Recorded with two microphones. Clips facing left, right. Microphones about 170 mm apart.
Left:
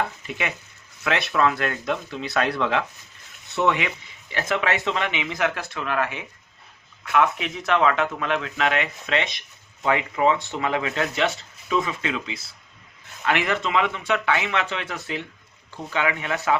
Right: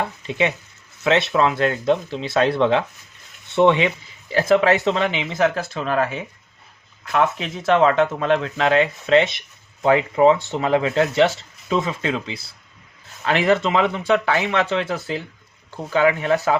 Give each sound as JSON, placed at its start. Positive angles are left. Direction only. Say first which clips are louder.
{"t": 0.3, "sound": "speech", "louder": "right 8 dB", "side_deg": -25}